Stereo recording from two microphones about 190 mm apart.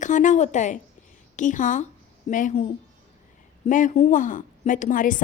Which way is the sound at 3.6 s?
40° left (ahead or behind).